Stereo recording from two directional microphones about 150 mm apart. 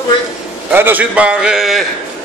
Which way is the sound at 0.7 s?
15° right (ahead or behind).